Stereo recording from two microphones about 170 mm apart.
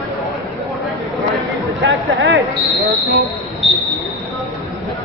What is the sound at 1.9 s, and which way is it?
Speech, 90° right.